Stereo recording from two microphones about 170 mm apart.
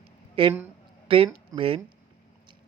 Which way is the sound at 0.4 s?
35° right (ahead or behind).